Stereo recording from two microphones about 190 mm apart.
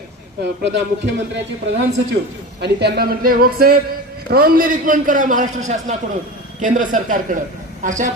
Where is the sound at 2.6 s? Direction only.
60° right (ahead or behind); by 8.1 s 40° right (ahead or behind).